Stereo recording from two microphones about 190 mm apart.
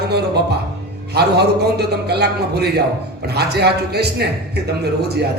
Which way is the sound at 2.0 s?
60° right (ahead or behind).